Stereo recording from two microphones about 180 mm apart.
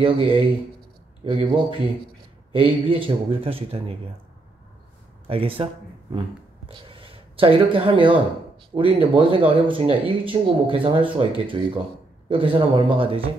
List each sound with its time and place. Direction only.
0.0 s a man's voice: 30° right (ahead or behind)
5.3 s a man's voice: 30° right (ahead or behind)
6.7 s speech: 30° right (ahead or behind)